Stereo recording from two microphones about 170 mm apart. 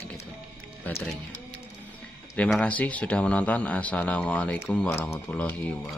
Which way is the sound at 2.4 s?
5° left (ahead or behind).